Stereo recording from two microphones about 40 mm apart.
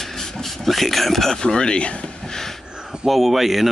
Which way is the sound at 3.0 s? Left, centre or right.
Centre.